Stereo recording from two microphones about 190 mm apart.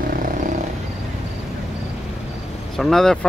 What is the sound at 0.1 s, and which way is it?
Vehicle, 45° right (ahead or behind).